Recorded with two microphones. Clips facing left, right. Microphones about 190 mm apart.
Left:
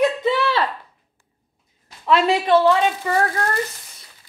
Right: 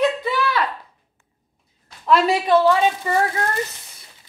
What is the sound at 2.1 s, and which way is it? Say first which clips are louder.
Speech: even; centre (ahead or behind).